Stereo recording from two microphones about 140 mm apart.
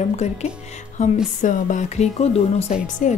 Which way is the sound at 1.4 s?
60° left (ahead or behind).